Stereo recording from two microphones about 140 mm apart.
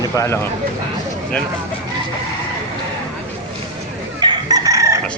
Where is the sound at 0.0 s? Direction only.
25° left (ahead or behind).